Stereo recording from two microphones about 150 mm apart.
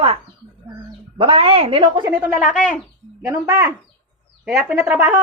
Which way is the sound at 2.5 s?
5° left (ahead or behind).